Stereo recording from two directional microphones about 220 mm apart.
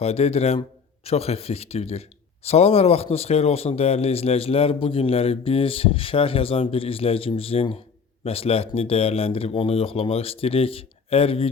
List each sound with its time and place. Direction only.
0.0 s speech: 30° left (ahead or behind)